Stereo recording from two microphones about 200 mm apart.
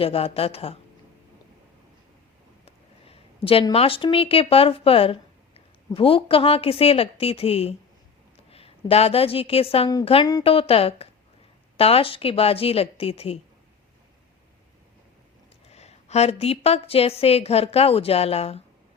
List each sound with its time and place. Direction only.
0.0 s a woman's voice: 30° left (ahead or behind)
2.6 s a woman's voice: 30° left (ahead or behind)
15.7 s a woman's voice: 35° left (ahead or behind)